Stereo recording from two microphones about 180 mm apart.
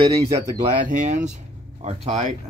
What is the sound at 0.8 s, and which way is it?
Speech, 45° right (ahead or behind).